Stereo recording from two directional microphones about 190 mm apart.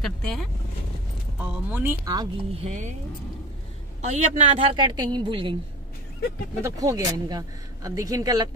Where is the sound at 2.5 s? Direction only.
40° right (ahead or behind).